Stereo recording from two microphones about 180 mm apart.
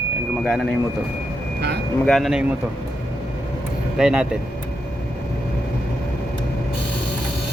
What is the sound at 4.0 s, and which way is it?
Speech, 5° right (ahead or behind).